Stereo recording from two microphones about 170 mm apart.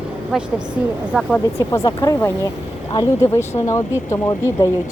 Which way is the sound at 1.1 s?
5° right (ahead or behind).